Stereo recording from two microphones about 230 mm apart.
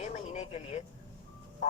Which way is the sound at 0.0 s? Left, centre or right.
Left.